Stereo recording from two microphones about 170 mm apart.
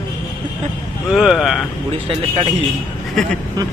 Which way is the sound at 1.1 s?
Centre (ahead or behind).